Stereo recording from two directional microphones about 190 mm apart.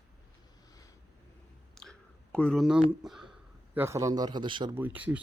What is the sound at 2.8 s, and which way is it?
A man's voice, centre (ahead or behind).